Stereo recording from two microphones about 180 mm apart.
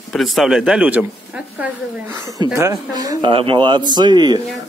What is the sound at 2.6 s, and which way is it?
Speech, 15° right (ahead or behind).